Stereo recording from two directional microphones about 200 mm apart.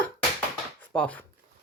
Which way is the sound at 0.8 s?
5° left (ahead or behind).